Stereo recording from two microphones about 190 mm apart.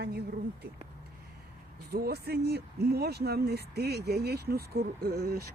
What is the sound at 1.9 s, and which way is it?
Speech, 55° right (ahead or behind).